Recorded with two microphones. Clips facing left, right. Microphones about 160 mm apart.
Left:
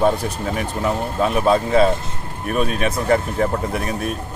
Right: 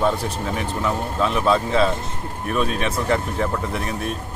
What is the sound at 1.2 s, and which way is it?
A man's voice, 50° left (ahead or behind).